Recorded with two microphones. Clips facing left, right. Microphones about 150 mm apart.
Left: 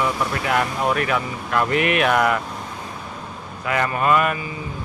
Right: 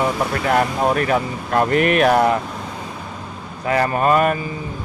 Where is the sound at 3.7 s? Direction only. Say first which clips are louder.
Right 3 dB; 35° right (ahead or behind).